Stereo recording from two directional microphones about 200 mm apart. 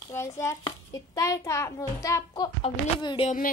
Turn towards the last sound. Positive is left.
turn(degrees=25)  # may be behind; listen again after turning